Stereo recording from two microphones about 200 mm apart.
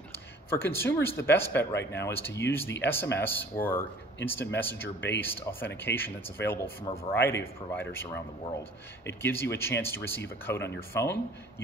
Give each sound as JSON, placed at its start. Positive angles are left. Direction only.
{"t": 0.5, "sound": "speech", "side_deg": 10}